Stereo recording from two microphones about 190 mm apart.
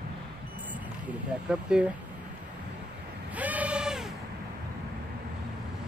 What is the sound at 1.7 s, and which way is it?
Speech, 5° right (ahead or behind).